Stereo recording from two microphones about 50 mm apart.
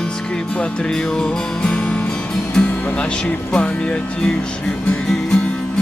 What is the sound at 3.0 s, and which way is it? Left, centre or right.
Speech, left.